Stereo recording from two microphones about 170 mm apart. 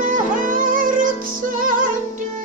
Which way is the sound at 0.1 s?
50° right (ahead or behind).